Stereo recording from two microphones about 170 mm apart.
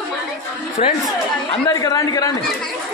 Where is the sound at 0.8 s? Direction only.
40° left (ahead or behind).